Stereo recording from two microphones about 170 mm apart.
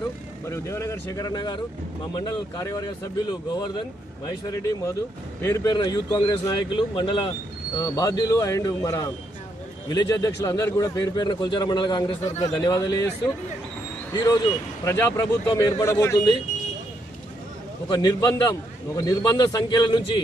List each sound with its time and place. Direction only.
0.5 s speech: 15° left (ahead or behind)
14.1 s speech: 25° left (ahead or behind)
17.8 s speech: 25° left (ahead or behind)